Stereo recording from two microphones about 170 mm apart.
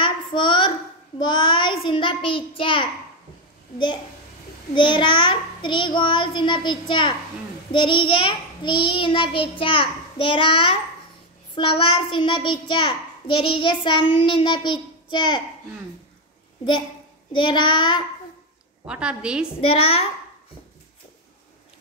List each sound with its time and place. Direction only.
0.0 s a sound: 30° left (ahead or behind)
1.2 s child singing: 25° left (ahead or behind)
1.9 s a child's voice: 30° left (ahead or behind)
17.3 s a child's voice: 30° left (ahead or behind)
18.9 s a woman's voice: 5° right (ahead or behind)
19.6 s a child's voice: 35° left (ahead or behind)